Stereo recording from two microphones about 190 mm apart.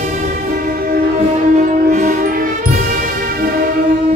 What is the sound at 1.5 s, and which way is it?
Music, 40° right (ahead or behind).